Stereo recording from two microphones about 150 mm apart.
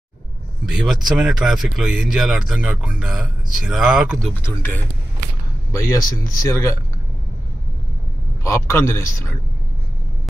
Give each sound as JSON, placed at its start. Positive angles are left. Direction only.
{"t": 0.7, "sound": "speech", "side_deg": -5}
{"t": 4.2, "sound": "speech", "side_deg": 10}
{"t": 8.5, "sound": "speech", "side_deg": 15}